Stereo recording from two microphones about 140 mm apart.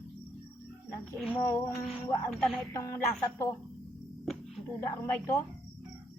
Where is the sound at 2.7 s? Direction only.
20° left (ahead or behind).